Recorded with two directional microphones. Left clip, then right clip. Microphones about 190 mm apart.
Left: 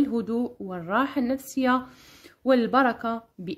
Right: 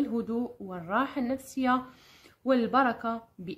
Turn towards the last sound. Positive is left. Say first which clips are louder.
# left 3 dB
turn(degrees=40)  # may be behind; listen again after turning